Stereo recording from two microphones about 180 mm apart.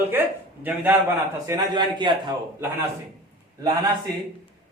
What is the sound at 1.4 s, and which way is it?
Speech, 25° right (ahead or behind).